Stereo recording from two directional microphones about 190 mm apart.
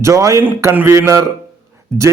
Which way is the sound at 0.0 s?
15° right (ahead or behind).